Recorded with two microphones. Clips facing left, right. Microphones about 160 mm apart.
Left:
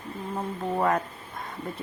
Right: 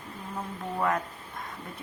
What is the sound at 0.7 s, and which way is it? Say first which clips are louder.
Speech: left 3 dB; 35° left (ahead or behind).